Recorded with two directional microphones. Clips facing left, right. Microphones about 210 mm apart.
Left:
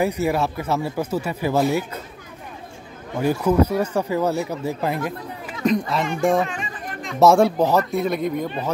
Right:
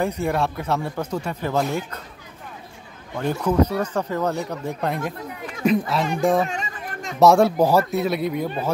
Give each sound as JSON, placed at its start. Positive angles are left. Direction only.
{"t": 0.0, "sound": "speech", "side_deg": 5}
{"t": 3.2, "sound": "speech", "side_deg": 10}
{"t": 5.6, "sound": "a sound", "side_deg": -5}
{"t": 6.5, "sound": "music", "side_deg": -45}
{"t": 7.2, "sound": "speech", "side_deg": 0}